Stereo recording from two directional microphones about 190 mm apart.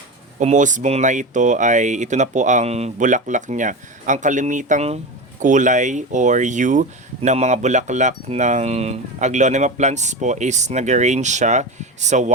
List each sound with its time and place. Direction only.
0.3 s speech: 40° right (ahead or behind)